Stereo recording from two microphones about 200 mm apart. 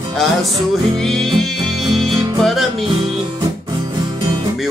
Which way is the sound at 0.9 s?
Centre (ahead or behind).